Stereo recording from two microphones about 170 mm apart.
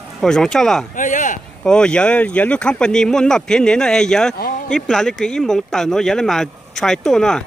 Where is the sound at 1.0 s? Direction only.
50° left (ahead or behind).